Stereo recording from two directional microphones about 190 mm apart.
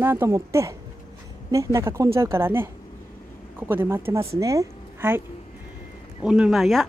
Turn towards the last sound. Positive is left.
turn(degrees=0)  # may be behind; listen again after turning